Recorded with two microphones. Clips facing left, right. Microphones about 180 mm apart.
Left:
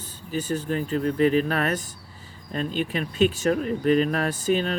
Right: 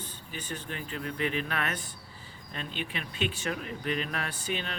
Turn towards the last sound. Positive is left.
turn(degrees=40)  # may be behind; listen again after turning